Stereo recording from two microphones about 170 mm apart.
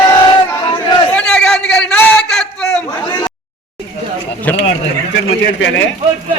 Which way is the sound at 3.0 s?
25° left (ahead or behind).